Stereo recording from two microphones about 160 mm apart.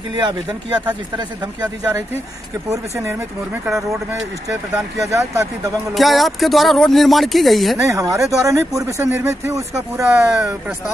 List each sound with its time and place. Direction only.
0.1 s speech: 25° right (ahead or behind)
2.7 s speech: 15° right (ahead or behind)
5.1 s speech: 20° right (ahead or behind)
5.9 s speech: centre (ahead or behind)
7.8 s speech: 20° right (ahead or behind)